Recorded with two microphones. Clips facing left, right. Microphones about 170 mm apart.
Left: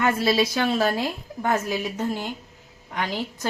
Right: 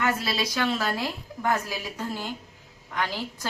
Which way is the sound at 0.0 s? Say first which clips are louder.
Left 6 dB; 25° left (ahead or behind).